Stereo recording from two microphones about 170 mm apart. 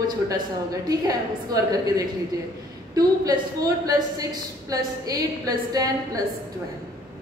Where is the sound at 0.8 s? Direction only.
20° right (ahead or behind).